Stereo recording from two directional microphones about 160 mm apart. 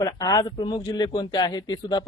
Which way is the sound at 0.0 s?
25° left (ahead or behind).